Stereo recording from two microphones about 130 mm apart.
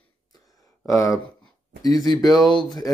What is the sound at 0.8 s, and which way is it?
Speech, 25° left (ahead or behind).